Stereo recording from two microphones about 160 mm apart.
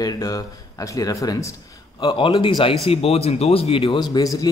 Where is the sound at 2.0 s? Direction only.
30° left (ahead or behind).